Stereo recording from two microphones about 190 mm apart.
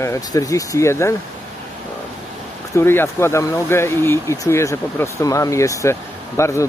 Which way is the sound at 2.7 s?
10° left (ahead or behind).